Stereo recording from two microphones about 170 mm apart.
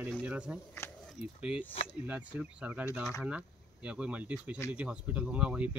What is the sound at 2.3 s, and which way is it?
Speech, 10° right (ahead or behind).